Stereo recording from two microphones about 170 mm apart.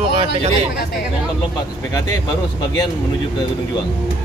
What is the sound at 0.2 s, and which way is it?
Speech, 40° right (ahead or behind).